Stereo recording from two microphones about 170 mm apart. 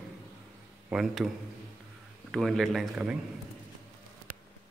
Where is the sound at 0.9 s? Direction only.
5° right (ahead or behind).